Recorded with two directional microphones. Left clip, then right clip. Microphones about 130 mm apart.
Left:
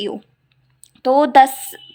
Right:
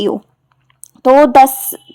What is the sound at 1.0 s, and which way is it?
Speech, 35° right (ahead or behind).